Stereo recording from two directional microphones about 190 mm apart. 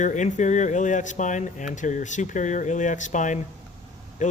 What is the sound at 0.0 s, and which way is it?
Speech, 40° left (ahead or behind).